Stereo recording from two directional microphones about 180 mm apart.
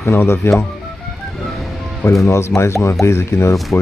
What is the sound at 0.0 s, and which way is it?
Speech, 15° left (ahead or behind).